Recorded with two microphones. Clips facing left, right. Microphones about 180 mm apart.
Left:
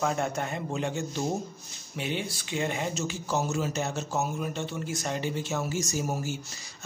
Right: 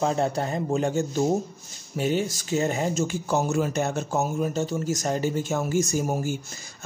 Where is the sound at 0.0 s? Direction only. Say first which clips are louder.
Right 5 dB; 30° right (ahead or behind).